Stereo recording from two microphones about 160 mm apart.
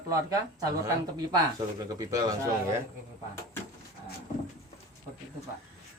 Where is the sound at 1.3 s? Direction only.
20° right (ahead or behind).